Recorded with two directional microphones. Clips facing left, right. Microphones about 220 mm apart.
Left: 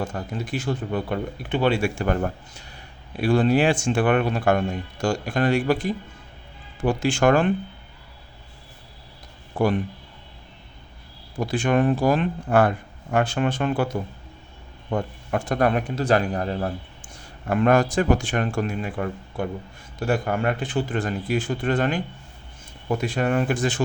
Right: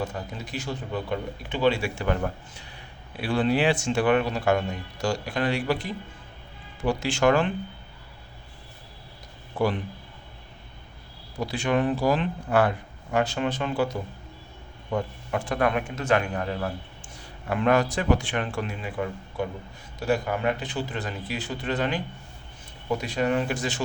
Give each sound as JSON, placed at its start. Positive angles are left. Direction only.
{"t": 0.0, "sound": "speech", "side_deg": 50}
{"t": 11.3, "sound": "a man's voice", "side_deg": 50}
{"t": 17.5, "sound": "speech", "side_deg": 45}